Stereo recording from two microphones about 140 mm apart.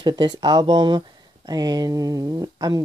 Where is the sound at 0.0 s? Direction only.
30° right (ahead or behind).